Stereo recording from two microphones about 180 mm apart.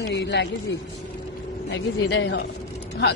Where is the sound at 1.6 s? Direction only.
80° left.